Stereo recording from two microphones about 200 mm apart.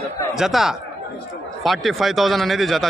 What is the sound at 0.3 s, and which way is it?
Speech, centre (ahead or behind).